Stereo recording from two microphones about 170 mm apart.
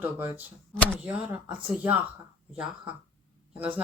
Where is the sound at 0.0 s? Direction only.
10° right (ahead or behind).